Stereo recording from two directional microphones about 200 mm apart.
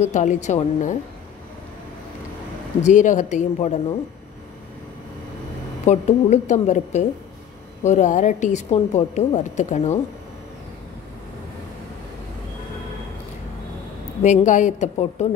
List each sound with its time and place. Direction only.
0.0 s a woman's voice: 35° left (ahead or behind)
2.8 s a woman's voice: 40° left (ahead or behind)
5.9 s a woman's voice: 35° left (ahead or behind)
14.2 s a woman's voice: 35° left (ahead or behind)